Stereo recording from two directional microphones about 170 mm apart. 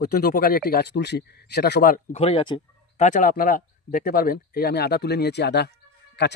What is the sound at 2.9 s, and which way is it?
Speech, 45° left (ahead or behind).